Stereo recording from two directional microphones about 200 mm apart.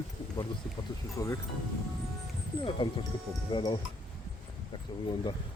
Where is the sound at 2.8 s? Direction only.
25° left (ahead or behind).